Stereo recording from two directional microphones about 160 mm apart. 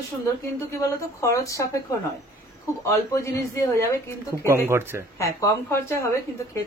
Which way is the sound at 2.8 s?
20° left (ahead or behind).